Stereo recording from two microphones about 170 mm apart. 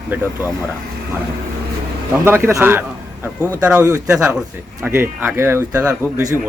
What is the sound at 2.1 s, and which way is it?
A man's voice, 15° right (ahead or behind).